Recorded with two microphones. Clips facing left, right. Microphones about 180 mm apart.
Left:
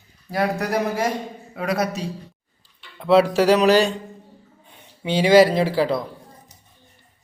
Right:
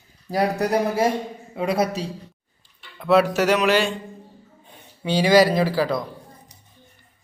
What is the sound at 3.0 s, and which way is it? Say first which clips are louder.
Music: left 2 dB; 25° left (ahead or behind).